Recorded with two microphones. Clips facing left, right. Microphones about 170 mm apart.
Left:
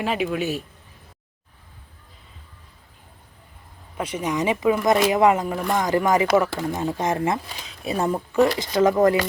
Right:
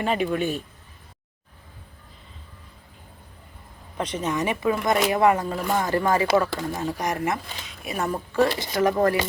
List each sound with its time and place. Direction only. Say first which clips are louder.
0.0 s speech: even; 5° left (ahead or behind)
3.9 s speech: left 1 dB; 10° left (ahead or behind)